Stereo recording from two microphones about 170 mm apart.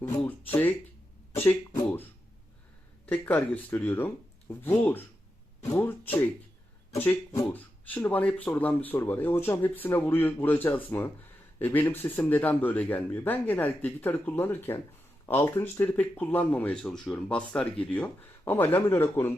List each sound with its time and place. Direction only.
0.0 s speech: 15° left (ahead or behind)
3.1 s speech: 10° left (ahead or behind)
6.9 s speech: 15° left (ahead or behind)